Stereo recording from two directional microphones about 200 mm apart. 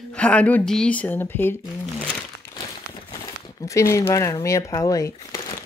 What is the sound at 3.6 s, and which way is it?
Speech, 15° left (ahead or behind).